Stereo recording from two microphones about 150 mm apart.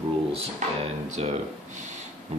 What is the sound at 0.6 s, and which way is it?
Speech, 55° right (ahead or behind).